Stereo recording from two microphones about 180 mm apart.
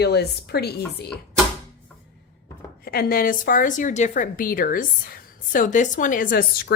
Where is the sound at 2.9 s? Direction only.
55° left (ahead or behind).